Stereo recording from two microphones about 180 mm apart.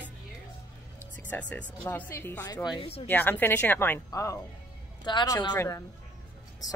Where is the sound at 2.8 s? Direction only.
30° left (ahead or behind).